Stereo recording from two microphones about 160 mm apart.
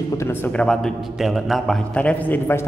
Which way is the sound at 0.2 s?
15° left (ahead or behind).